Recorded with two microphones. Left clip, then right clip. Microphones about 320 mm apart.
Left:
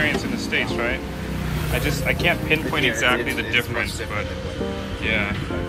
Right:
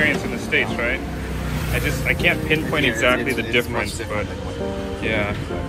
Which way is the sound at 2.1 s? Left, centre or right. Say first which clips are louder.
Right 1 dB; centre.